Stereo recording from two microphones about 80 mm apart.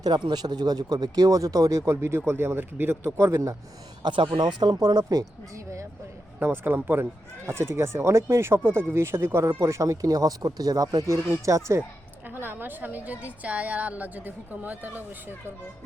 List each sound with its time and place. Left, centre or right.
0.0 s speech: right
3.2 s speech: right
4.0 s speech: right
5.0 s speech: right
6.4 s speech: right
12.3 s a woman's voice: right